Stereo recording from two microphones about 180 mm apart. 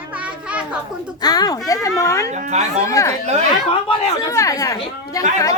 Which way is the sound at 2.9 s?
15° left (ahead or behind).